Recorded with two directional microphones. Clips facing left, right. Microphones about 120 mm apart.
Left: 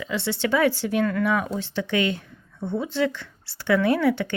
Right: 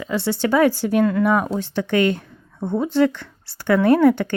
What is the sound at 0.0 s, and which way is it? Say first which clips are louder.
Speech: right 4 dB; 40° right (ahead or behind).